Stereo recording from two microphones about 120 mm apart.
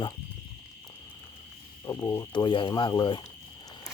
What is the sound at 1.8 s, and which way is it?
Speech, 30° left (ahead or behind).